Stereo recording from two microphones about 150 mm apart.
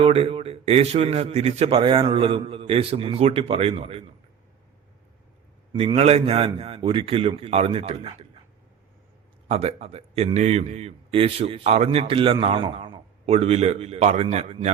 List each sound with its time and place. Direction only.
0.0 s a man's voice: 40° right (ahead or behind)
6.0 s a man's voice: 40° right (ahead or behind)
9.5 s a man's voice: 45° right (ahead or behind)